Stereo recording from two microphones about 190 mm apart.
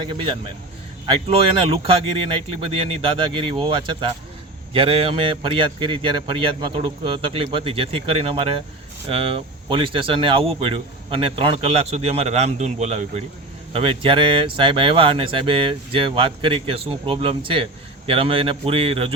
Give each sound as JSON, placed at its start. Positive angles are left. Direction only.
{"t": 1.3, "sound": "speech", "side_deg": -30}